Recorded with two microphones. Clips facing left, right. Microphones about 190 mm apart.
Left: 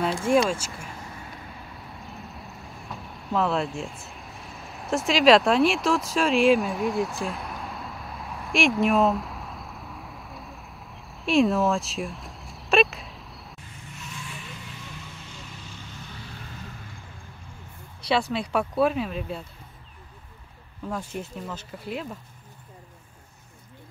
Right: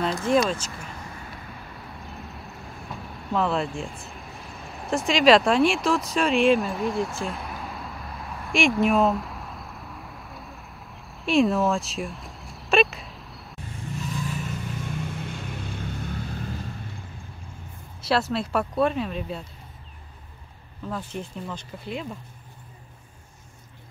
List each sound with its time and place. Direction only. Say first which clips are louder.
0.3 s speech: even; 10° left (ahead or behind)
2.0 s vehicle: even; centre (ahead or behind)
13.9 s vehicle: right 10 dB; 40° right (ahead or behind); by 16.1 s 55° right (ahead or behind)
18.0 s speech: right 1 dB; centre (ahead or behind)
20.9 s speech: even; 5° left (ahead or behind)